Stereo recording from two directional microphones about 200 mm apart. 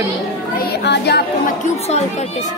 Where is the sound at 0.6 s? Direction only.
55° left (ahead or behind).